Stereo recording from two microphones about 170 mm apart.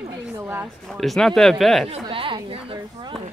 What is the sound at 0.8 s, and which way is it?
Speech, centre (ahead or behind).